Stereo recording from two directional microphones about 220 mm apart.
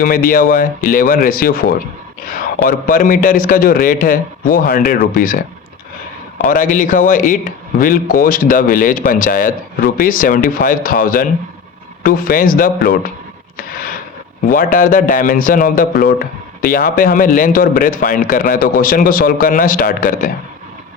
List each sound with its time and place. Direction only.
0.0 s speech: 40° left (ahead or behind)
6.5 s speech: 35° left (ahead or behind)
14.5 s speech: 40° left (ahead or behind)